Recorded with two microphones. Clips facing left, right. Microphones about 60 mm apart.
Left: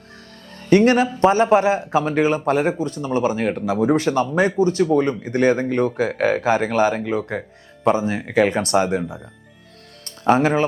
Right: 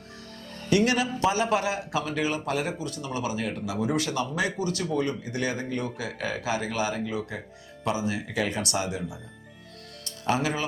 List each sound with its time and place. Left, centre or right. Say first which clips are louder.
0.7 s a man's voice: left 9 dB; left
10.2 s a man's voice: left 10 dB; left